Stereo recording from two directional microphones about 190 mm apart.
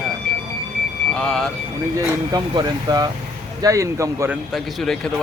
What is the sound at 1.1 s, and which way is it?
Speech, 5° left (ahead or behind).